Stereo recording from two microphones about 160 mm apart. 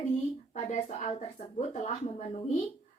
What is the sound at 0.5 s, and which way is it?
A woman's voice, 50° left (ahead or behind).